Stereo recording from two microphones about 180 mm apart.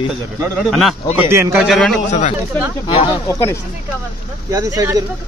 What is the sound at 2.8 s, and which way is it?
Speech, 30° left (ahead or behind).